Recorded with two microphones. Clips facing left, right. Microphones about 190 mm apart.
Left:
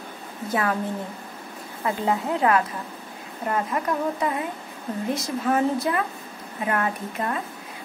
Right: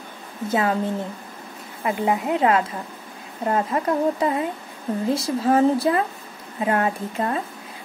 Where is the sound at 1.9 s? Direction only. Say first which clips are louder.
Right 2 dB; 15° right (ahead or behind).